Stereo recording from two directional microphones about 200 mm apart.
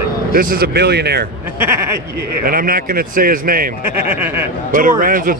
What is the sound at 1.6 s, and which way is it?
Speech, 10° right (ahead or behind).